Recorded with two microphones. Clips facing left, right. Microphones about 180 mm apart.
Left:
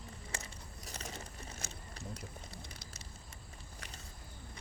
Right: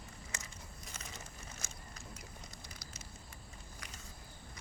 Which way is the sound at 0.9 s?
35° left (ahead or behind).